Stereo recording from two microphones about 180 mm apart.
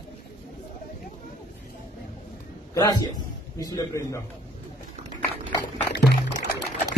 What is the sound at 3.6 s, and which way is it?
Speech, 20° left (ahead or behind).